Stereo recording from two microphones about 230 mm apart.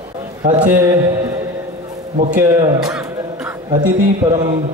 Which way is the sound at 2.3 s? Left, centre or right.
Centre.